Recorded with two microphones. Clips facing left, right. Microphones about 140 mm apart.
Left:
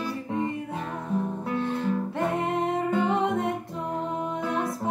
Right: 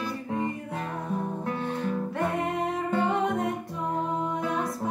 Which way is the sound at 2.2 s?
25° left (ahead or behind).